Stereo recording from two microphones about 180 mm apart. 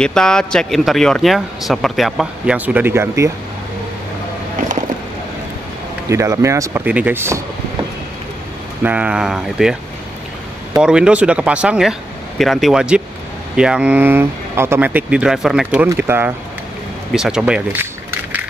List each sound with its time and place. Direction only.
0.0 s speech: 5° left (ahead or behind); by 3.3 s 15° right (ahead or behind)
6.0 s speech: 15° right (ahead or behind)
8.8 s speech: 5° right (ahead or behind)
10.8 s speech: 5° right (ahead or behind)